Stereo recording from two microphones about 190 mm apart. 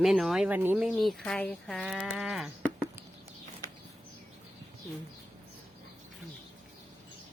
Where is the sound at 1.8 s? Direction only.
5° right (ahead or behind).